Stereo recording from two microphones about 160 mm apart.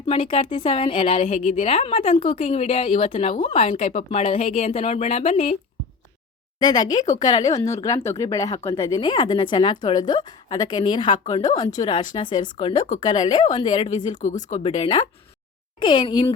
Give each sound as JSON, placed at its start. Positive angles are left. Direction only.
{"t": 0.1, "sound": "speech", "side_deg": 35}
{"t": 6.6, "sound": "speech", "side_deg": 25}
{"t": 14.1, "sound": "speech", "side_deg": 50}
{"t": 14.6, "sound": "speech", "side_deg": 35}